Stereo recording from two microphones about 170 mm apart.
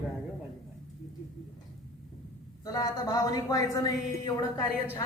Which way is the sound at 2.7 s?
20° left (ahead or behind).